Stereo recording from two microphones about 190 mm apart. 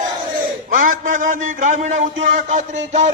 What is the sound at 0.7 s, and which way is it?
A man's voice, 45° right (ahead or behind).